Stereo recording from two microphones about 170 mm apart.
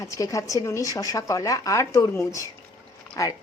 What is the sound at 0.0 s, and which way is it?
A woman's voice, 20° left (ahead or behind).